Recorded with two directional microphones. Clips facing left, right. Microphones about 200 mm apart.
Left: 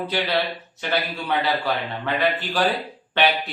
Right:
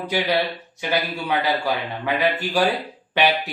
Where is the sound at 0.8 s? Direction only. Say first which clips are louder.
Right 2 dB; 10° right (ahead or behind).